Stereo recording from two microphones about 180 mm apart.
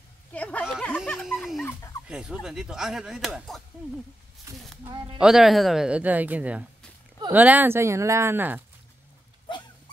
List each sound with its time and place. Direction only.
0.3 s a sound: 5° left (ahead or behind)
1.6 s fowl: 15° left (ahead or behind)
2.0 s speech: 5° right (ahead or behind)
4.5 s speech: 15° right (ahead or behind)
5.2 s speech: centre (ahead or behind)